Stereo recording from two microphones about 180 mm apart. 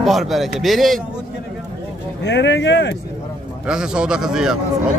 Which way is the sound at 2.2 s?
75° left (ahead or behind).